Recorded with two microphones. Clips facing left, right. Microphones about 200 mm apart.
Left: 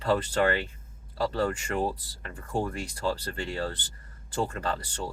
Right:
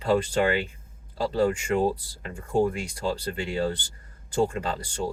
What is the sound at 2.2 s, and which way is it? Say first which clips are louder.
Speech: right 7 dB; 25° right (ahead or behind).